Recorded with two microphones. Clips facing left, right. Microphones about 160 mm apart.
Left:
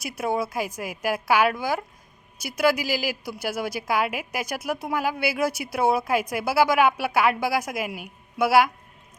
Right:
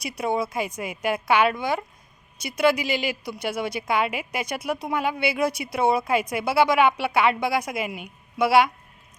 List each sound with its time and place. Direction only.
0.0 s a woman's voice: 5° left (ahead or behind)